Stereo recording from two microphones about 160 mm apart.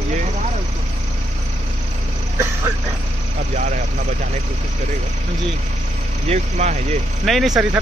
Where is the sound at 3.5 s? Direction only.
50° right (ahead or behind).